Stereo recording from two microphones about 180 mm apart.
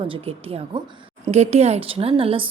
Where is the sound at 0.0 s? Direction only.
30° right (ahead or behind).